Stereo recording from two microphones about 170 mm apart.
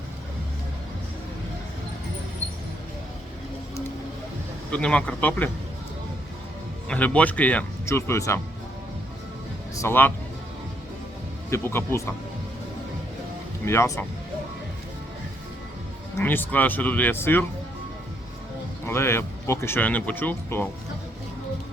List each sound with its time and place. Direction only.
4.7 s speech: 5° left (ahead or behind)
6.8 s speech: 10° left (ahead or behind)
9.7 s speech: 15° left (ahead or behind)
11.5 s speech: 15° left (ahead or behind)
13.7 s speech: 15° left (ahead or behind)
16.1 s speech: 10° left (ahead or behind)
18.9 s speech: 15° left (ahead or behind)